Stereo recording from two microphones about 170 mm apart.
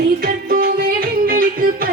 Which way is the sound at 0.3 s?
60° right (ahead or behind).